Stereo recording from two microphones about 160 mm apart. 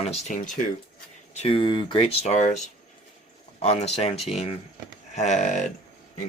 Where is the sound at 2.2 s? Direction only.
45° left (ahead or behind).